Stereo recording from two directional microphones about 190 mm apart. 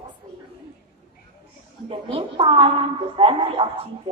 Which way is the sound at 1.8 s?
30° right (ahead or behind).